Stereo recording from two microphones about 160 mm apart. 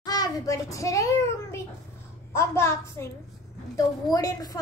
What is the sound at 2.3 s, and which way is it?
A woman's voice, 15° left (ahead or behind).